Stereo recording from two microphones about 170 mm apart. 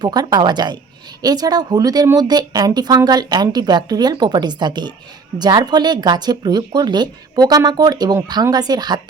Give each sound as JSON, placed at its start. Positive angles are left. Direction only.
{"t": 0.0, "sound": "a woman's voice", "side_deg": -25}